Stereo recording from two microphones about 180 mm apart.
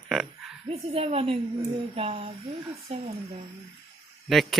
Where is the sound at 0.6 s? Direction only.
35° right (ahead or behind).